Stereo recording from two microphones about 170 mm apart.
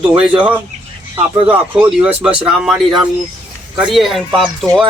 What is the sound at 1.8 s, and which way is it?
Speech, 10° right (ahead or behind).